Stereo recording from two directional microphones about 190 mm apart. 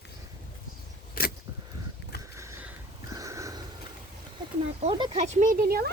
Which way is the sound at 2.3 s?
15° right (ahead or behind).